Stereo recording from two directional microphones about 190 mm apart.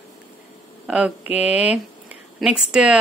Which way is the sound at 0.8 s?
5° right (ahead or behind).